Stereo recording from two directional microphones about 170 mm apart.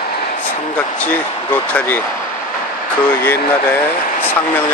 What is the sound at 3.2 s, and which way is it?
Speech, 10° left (ahead or behind).